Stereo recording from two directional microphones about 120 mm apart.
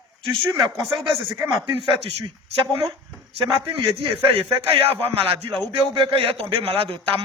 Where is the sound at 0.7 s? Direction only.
Centre (ahead or behind).